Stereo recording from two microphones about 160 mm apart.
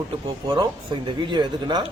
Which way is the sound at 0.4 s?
25° right (ahead or behind).